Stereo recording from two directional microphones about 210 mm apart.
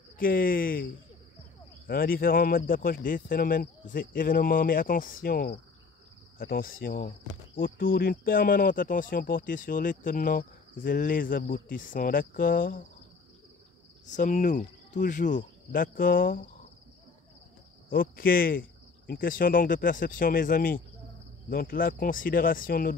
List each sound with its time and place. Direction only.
0.2 s speech: 45° left (ahead or behind)
1.9 s speech: 45° left (ahead or behind)
14.0 s speech: 35° left (ahead or behind)
17.8 s speech: 45° left (ahead or behind)